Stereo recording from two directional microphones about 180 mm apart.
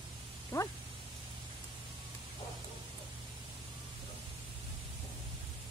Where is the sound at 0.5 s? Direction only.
15° left (ahead or behind).